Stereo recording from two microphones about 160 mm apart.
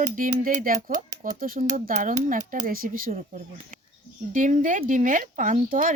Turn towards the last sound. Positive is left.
turn(degrees=-55)  # may be behind; listen again after turning